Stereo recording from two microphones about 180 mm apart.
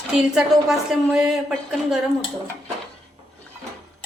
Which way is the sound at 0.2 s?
5° right (ahead or behind).